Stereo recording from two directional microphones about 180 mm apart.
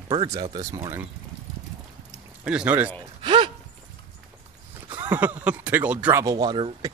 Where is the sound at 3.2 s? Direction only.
30° right (ahead or behind).